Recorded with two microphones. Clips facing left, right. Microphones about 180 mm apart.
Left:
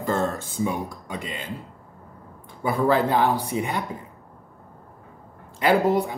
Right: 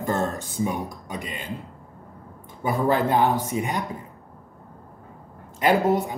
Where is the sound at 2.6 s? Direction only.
15° right (ahead or behind).